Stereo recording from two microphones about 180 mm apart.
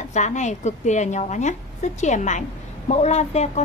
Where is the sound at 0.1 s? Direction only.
40° left (ahead or behind).